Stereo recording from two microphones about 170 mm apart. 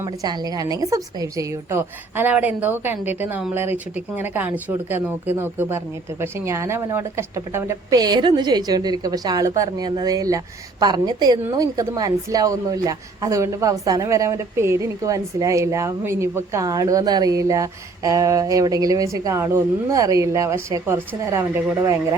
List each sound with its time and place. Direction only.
0.0 s a woman's voice: 20° right (ahead or behind)